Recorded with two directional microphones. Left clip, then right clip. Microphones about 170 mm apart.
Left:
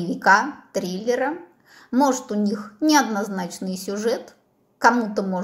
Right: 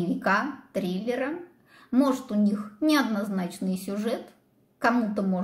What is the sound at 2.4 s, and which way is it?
A child's voice, 20° left (ahead or behind).